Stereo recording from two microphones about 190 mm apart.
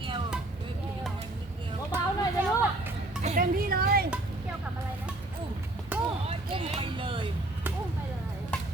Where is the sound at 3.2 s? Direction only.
40° right (ahead or behind).